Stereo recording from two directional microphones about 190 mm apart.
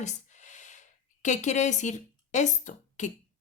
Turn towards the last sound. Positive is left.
turn(degrees=40)  # may be behind; listen again after turning